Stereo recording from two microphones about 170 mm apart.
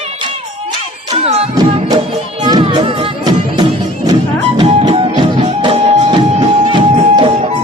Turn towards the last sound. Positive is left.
turn(degrees=-30)  # may be behind; listen again after turning